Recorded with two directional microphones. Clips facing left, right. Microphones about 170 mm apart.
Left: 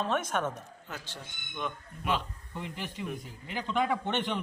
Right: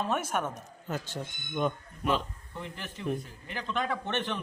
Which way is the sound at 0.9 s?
45° right (ahead or behind).